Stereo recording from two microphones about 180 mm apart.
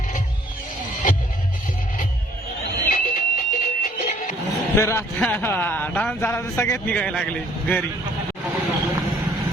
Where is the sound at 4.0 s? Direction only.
35° left (ahead or behind).